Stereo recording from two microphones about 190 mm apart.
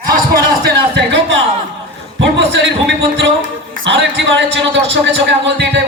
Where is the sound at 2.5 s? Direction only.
70° right (ahead or behind).